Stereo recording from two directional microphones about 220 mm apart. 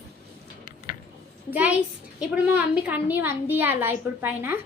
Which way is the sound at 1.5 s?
5° right (ahead or behind).